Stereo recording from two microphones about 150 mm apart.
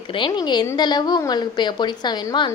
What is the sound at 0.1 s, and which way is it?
A woman's voice, 30° left (ahead or behind).